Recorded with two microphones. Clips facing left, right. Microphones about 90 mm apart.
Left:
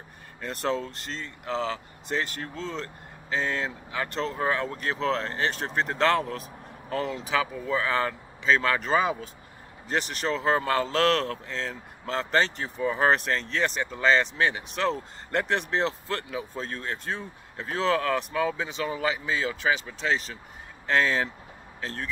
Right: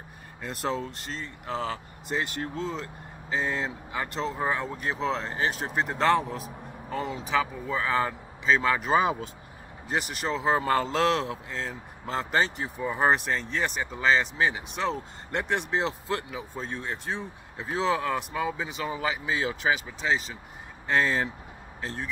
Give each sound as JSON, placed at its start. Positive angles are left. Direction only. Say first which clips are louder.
{"t": 0.4, "sound": "speech", "louder": "left 2 dB", "side_deg": -5}
{"t": 2.2, "sound": "speech", "louder": "right 3 dB", "side_deg": -20}
{"t": 2.7, "sound": "speech", "louder": "even", "side_deg": -10}
{"t": 18.6, "sound": "speech", "louder": "left 2 dB", "side_deg": -10}
{"t": 20.0, "sound": "speech", "louder": "even", "side_deg": -5}